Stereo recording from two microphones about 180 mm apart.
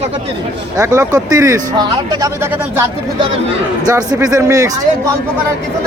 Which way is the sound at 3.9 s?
20° right (ahead or behind).